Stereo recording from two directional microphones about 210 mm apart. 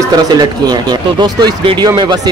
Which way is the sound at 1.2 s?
20° right (ahead or behind).